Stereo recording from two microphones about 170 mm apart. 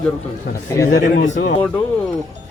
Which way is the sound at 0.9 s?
80° left.